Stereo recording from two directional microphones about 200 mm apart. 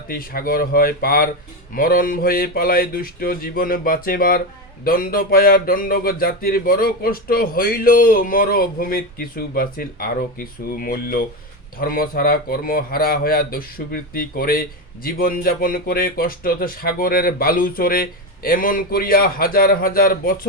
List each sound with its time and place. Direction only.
0.1 s speech: 45° left (ahead or behind)